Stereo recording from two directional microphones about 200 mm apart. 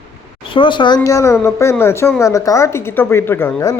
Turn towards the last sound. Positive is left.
turn(degrees=15)  # may be behind; listen again after turning